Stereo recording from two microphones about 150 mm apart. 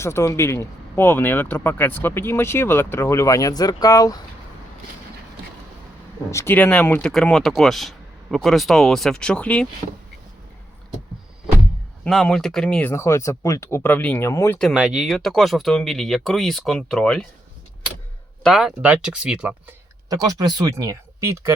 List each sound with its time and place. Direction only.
0.0 s speech: 20° left (ahead or behind)
6.3 s speech: 15° left (ahead or behind)
12.0 s speech: centre (ahead or behind); by 14.6 s 20° left (ahead or behind)
14.6 s speech: 5° right (ahead or behind)
18.4 s speech: centre (ahead or behind)
20.1 s speech: 25° right (ahead or behind)